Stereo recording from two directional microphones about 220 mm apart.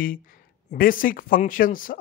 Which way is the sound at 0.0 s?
40° left (ahead or behind).